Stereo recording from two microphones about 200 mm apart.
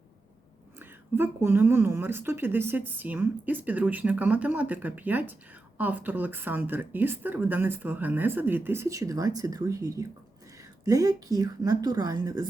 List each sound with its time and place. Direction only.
0.8 s a woman's voice: 10° right (ahead or behind)